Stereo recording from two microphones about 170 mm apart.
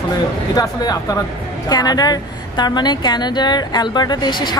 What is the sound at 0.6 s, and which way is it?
A woman's voice, 20° left (ahead or behind).